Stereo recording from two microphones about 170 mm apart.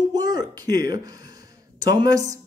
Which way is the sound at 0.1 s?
25° right (ahead or behind).